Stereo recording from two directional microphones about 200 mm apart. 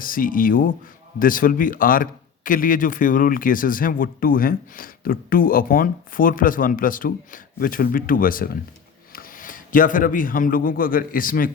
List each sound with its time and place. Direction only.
0.0 s a man's voice: 45° left (ahead or behind)